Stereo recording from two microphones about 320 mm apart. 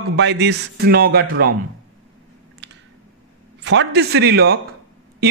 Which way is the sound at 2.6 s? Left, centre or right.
Right.